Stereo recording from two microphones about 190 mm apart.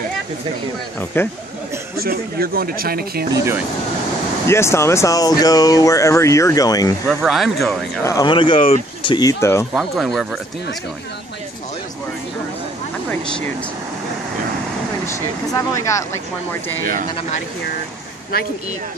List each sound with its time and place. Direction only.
1.1 s speech: 10° left (ahead or behind)
2.0 s speech: 55° right (ahead or behind)
4.5 s speech: 15° left (ahead or behind)
7.1 s speech: centre (ahead or behind)
8.0 s speech: 20° left (ahead or behind)
9.8 s speech: centre (ahead or behind)
15.0 s speech: 15° left (ahead or behind)
16.8 s speech: 45° right (ahead or behind)